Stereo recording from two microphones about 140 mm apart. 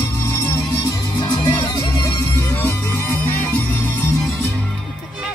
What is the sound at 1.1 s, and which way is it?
Music, 35° left (ahead or behind).